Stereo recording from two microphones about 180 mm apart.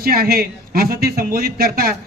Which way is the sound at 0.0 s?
55° right (ahead or behind).